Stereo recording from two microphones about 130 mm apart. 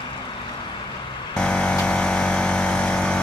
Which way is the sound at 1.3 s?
5° left (ahead or behind).